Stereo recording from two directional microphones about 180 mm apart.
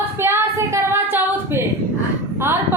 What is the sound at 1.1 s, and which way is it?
Singing, 10° right (ahead or behind).